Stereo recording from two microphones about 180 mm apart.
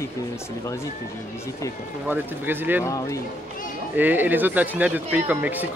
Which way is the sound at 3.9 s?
10° right (ahead or behind).